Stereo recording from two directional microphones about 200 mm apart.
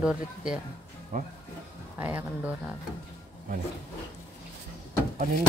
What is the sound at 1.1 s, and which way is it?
Speech, 45° right (ahead or behind).